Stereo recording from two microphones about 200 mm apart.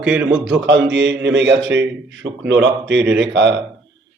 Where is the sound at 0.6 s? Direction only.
65° right (ahead or behind).